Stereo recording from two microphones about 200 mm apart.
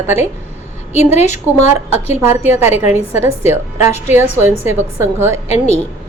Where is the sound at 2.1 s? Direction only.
10° right (ahead or behind).